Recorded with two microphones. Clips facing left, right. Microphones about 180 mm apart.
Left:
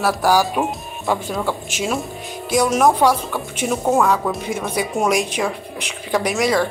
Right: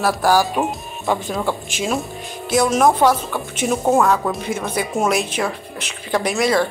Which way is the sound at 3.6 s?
5° right (ahead or behind).